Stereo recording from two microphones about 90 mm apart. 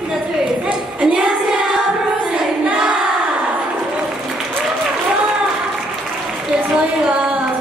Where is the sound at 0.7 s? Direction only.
10° right (ahead or behind).